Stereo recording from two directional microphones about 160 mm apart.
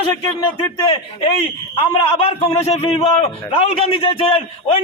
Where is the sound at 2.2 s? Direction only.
40° left (ahead or behind).